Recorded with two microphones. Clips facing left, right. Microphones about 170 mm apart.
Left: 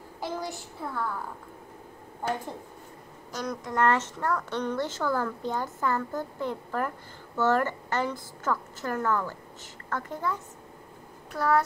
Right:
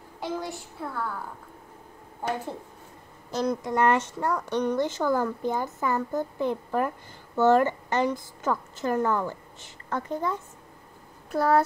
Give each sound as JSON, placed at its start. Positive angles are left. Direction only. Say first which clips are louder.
{"t": 0.2, "sound": "a child's voice", "louder": "right 2 dB", "side_deg": 0}
{"t": 3.3, "sound": "a woman's voice", "louder": "right 7 dB", "side_deg": -30}
{"t": 11.3, "sound": "a woman's voice", "louder": "right 3 dB", "side_deg": -30}